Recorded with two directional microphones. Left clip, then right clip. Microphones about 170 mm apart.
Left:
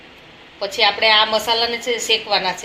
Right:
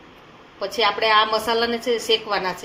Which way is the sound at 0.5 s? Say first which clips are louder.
Left 3 dB; 75° right (ahead or behind).